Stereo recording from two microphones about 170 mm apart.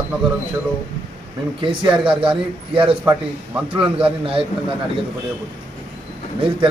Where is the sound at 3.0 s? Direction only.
10° right (ahead or behind).